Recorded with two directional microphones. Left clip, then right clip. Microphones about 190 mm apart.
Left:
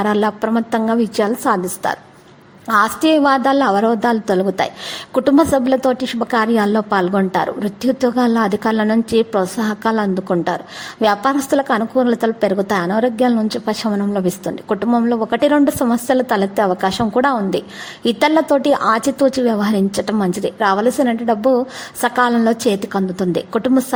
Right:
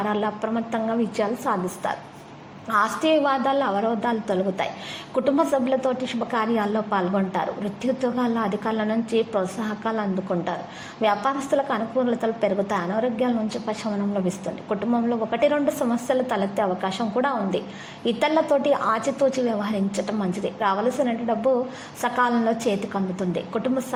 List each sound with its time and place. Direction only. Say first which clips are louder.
0.0 s a woman's voice: left 8 dB; 40° left (ahead or behind)